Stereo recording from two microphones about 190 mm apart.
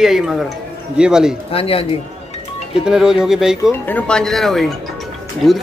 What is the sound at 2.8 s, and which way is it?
Speech, 5° right (ahead or behind).